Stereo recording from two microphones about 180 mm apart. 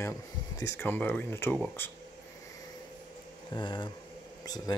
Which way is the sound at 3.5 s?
25° left (ahead or behind).